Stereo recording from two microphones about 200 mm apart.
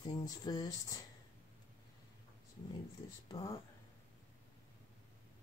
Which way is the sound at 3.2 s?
20° left (ahead or behind).